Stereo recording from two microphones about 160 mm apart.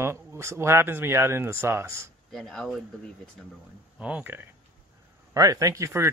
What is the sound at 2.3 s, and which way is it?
Speech, centre (ahead or behind).